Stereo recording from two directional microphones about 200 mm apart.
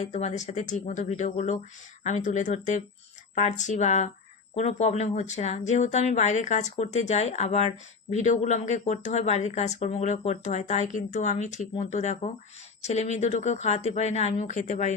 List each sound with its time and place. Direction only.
0.0 s speech: 35° left (ahead or behind)